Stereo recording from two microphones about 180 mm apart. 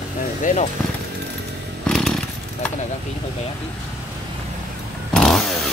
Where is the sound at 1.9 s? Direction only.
Centre (ahead or behind).